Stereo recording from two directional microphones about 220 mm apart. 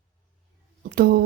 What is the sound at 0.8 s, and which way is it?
Speech, 45° right (ahead or behind).